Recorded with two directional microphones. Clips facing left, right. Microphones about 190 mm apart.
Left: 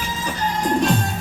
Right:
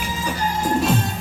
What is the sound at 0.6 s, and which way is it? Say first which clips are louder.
Music: left 1 dB; 5° right (ahead or behind).